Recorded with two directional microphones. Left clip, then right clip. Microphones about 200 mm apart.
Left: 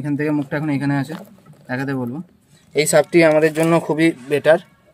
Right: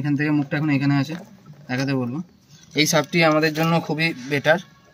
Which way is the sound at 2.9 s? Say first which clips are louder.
Left 6 dB; 25° left (ahead or behind).